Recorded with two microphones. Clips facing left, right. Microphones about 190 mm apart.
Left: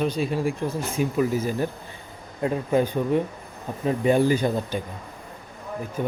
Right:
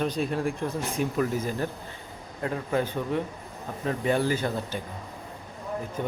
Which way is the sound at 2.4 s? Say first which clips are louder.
Left 5 dB; 20° left (ahead or behind).